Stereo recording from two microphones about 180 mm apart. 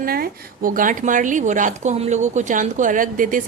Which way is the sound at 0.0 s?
55° right (ahead or behind).